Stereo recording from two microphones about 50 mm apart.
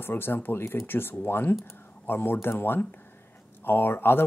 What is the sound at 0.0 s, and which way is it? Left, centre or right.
Speech, left.